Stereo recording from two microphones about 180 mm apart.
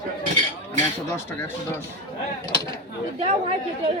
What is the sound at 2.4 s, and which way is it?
Speech, 20° left (ahead or behind).